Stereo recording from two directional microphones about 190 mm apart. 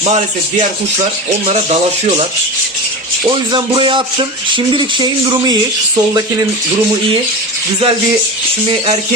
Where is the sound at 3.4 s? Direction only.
25° right (ahead or behind).